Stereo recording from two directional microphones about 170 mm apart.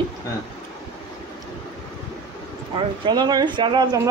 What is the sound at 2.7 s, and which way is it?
Speech, 25° right (ahead or behind).